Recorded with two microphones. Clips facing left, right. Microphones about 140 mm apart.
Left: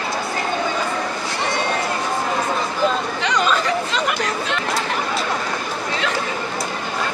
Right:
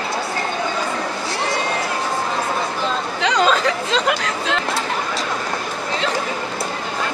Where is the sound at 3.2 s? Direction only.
90° right.